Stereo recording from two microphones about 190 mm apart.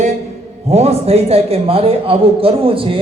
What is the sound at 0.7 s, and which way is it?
A man's voice, 35° right (ahead or behind).